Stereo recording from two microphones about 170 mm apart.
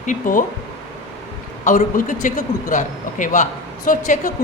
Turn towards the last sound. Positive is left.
turn(degrees=50)  # may be behind; listen again after turning